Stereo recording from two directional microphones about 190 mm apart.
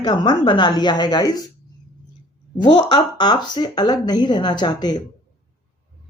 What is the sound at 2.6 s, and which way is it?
Speech, 25° left (ahead or behind).